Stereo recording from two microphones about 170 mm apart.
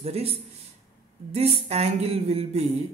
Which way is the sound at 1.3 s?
40° right (ahead or behind).